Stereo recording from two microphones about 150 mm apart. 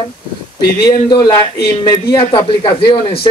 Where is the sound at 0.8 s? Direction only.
25° left (ahead or behind).